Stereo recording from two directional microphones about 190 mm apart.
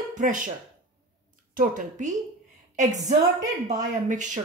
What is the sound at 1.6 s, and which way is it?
Speech, 45° right (ahead or behind).